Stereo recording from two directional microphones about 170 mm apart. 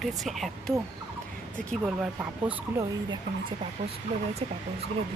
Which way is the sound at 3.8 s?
35° right (ahead or behind).